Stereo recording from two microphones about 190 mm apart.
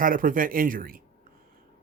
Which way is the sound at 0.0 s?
45° right (ahead or behind).